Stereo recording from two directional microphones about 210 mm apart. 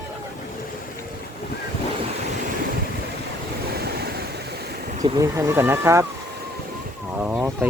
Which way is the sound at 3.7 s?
50° right (ahead or behind).